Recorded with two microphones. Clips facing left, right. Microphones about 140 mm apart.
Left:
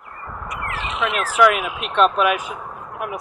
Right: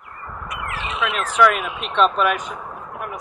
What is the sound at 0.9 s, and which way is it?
Speech, centre (ahead or behind).